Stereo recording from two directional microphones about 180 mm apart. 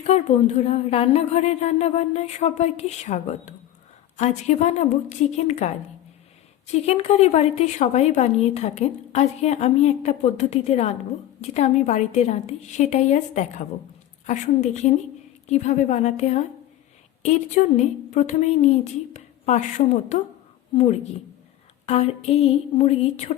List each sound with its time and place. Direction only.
0.1 s a woman's voice: 35° left (ahead or behind)
6.8 s a woman's voice: 35° left (ahead or behind)
21.8 s a woman's voice: 35° left (ahead or behind)